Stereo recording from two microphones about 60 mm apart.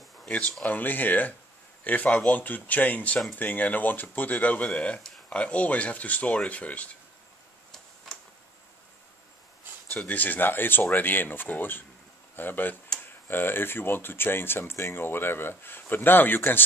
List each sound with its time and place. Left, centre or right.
0.4 s speech: left
2.3 s speech: left
7.7 s tick-tock: centre
9.9 s speech: left